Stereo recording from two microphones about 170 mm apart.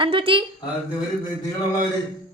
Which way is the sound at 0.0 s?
30° right (ahead or behind).